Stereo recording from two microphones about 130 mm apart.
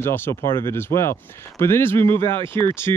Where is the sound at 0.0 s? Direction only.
15° left (ahead or behind).